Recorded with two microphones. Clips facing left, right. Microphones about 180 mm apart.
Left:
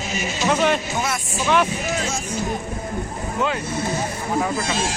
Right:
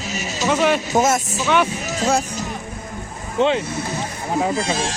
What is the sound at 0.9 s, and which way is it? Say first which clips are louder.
Speech: right 8 dB; 45° right (ahead or behind).